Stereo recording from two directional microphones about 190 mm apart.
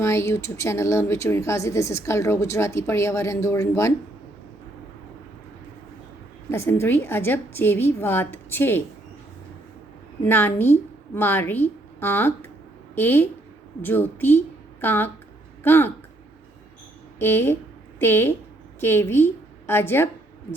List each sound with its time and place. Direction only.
0.0 s speech: 15° left (ahead or behind)
6.5 s speech: 15° left (ahead or behind)
10.2 s a woman's voice: 10° left (ahead or behind)
17.2 s a woman's voice: 10° left (ahead or behind)